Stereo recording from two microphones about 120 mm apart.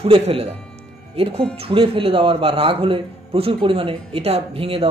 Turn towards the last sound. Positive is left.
turn(degrees=-55)  # may be behind; listen again after turning